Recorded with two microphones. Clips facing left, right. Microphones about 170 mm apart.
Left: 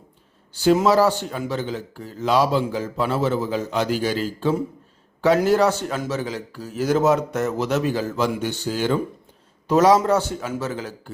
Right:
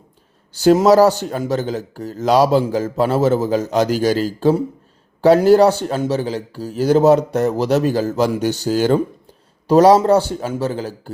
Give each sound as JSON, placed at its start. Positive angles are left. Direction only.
{"t": 0.6, "sound": "speech", "side_deg": -40}